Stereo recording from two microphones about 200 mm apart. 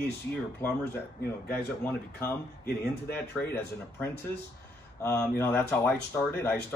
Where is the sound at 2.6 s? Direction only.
50° left (ahead or behind).